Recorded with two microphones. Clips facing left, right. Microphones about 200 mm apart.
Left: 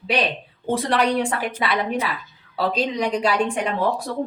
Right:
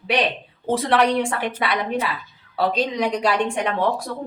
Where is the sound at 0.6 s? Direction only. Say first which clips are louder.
Right 2 dB; centre (ahead or behind).